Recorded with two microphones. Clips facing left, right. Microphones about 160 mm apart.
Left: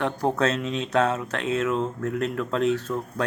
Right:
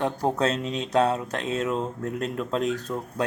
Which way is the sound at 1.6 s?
15° right (ahead or behind).